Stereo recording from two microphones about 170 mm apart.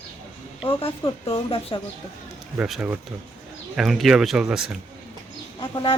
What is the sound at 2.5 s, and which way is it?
Speech, 10° right (ahead or behind).